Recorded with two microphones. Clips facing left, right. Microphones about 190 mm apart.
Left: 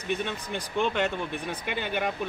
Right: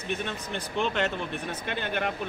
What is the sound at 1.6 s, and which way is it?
Speech, 10° left (ahead or behind).